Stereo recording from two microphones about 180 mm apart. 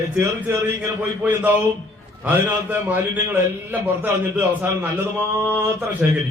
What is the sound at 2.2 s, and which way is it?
A man's voice, 10° right (ahead or behind).